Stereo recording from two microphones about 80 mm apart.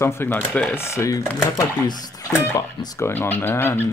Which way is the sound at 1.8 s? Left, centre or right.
Left.